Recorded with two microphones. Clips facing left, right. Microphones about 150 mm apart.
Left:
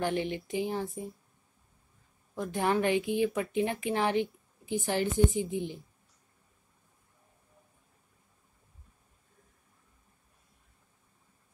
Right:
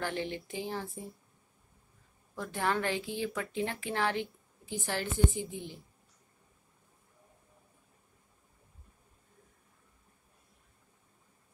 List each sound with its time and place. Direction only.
0.0 s a woman's voice: 20° left (ahead or behind)
2.3 s a woman's voice: 15° left (ahead or behind)